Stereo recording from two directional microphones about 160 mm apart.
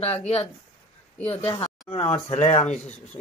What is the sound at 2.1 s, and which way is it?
Speech, 40° left (ahead or behind).